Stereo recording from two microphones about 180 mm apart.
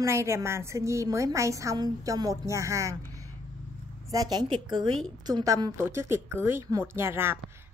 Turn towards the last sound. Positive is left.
turn(degrees=-15)  # may be behind; listen again after turning